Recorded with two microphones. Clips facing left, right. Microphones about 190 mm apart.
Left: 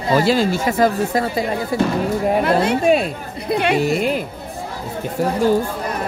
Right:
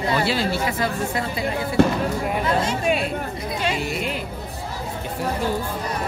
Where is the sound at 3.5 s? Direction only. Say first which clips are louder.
Left 9 dB; 60° left (ahead or behind).